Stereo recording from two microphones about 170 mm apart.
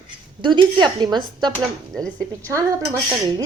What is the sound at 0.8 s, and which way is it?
A woman's voice, 25° right (ahead or behind).